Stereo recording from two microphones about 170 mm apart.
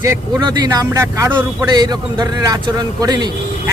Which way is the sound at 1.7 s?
25° right (ahead or behind).